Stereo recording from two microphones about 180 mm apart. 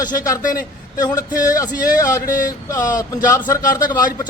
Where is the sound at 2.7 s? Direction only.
20° left (ahead or behind).